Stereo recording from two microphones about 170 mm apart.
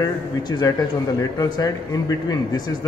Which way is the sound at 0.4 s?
25° left (ahead or behind).